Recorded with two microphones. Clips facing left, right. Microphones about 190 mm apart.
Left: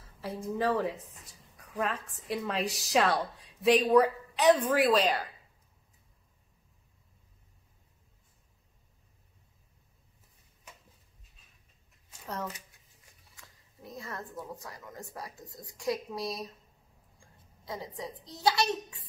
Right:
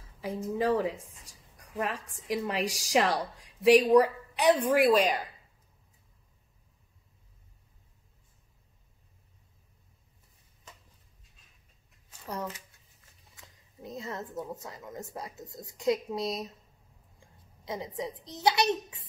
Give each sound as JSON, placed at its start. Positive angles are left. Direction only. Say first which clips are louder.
{"t": 0.6, "sound": "a woman's voice", "louder": "right 2 dB", "side_deg": -10}
{"t": 12.1, "sound": "shuffling cards", "louder": "right 1 dB", "side_deg": -10}
{"t": 13.4, "sound": "a woman's voice", "louder": "right 5 dB", "side_deg": -20}